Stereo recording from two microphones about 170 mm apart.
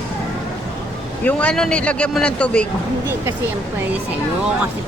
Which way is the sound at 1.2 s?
5° left (ahead or behind).